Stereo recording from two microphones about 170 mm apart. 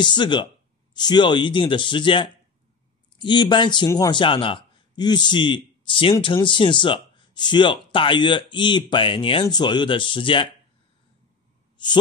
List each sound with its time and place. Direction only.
0.0 s a man's voice: 25° left (ahead or behind)
11.8 s speech: 25° left (ahead or behind)